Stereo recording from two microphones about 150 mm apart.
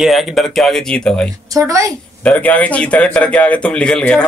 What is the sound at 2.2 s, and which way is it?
A man's voice, 10° left (ahead or behind).